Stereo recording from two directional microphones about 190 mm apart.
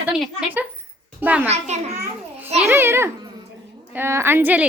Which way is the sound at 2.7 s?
10° right (ahead or behind).